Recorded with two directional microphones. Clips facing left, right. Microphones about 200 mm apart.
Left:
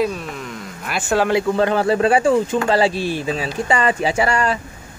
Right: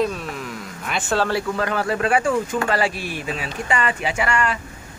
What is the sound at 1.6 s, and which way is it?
Speech, 30° left (ahead or behind).